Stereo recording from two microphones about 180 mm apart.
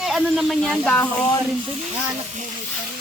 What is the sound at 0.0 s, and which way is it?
Speech, centre (ahead or behind).